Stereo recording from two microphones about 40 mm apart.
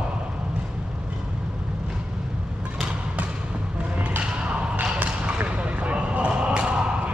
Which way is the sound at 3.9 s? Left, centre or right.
Right.